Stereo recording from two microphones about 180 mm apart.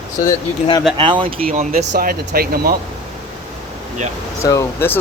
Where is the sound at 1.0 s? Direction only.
30° right (ahead or behind).